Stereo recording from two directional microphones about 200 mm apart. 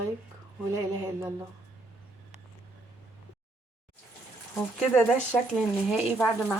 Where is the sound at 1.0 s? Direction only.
15° right (ahead or behind).